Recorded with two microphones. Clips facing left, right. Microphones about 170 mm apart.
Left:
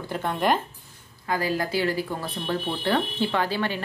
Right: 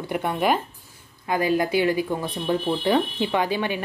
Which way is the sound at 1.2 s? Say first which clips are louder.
Right 4 dB; 20° right (ahead or behind).